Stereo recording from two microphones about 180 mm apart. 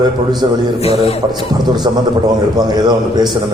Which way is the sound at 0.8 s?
35° left (ahead or behind).